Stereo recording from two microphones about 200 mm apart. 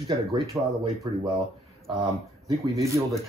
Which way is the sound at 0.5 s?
10° right (ahead or behind).